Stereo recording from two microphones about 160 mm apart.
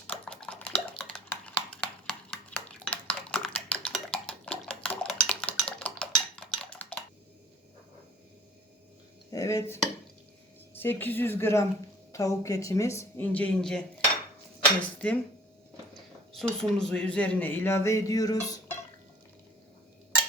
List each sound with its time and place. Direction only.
0.1 s typing: 5° left (ahead or behind)
4.1 s dishes: 5° left (ahead or behind)
5.8 s cutlery: 5° left (ahead or behind)
9.3 s dishes: 20° left (ahead or behind)
10.8 s speech: 15° left (ahead or behind)
16.3 s speech: centre (ahead or behind); by 18.8 s 20° left (ahead or behind)